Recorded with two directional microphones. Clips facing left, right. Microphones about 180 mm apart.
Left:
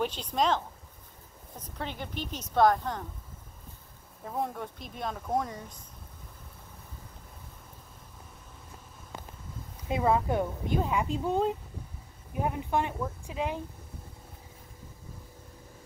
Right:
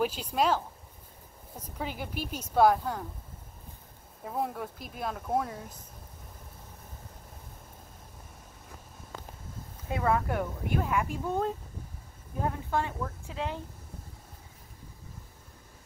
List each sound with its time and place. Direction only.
0.0 s speech: 10° right (ahead or behind)
1.6 s speech: 10° right (ahead or behind)
4.2 s speech: 5° right (ahead or behind)
9.8 s speech: 15° left (ahead or behind)